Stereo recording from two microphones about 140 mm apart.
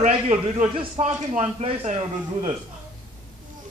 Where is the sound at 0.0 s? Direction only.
65° right (ahead or behind).